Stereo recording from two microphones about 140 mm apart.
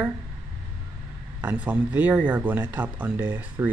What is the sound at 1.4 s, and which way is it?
Speech, 10° right (ahead or behind).